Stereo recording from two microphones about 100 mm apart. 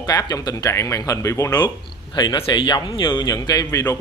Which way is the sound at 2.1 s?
50° left (ahead or behind).